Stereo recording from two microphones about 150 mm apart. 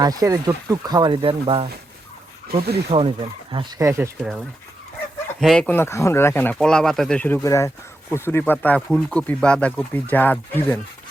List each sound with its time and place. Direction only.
0.0 s speech: 25° right (ahead or behind)
2.9 s speech: 40° right (ahead or behind)
3.8 s speech: 20° right (ahead or behind)
4.2 s speech: 5° right (ahead or behind)
7.4 s speech: 20° left (ahead or behind)